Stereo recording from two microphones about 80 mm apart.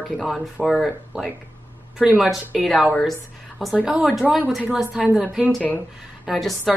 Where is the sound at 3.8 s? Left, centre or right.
Centre.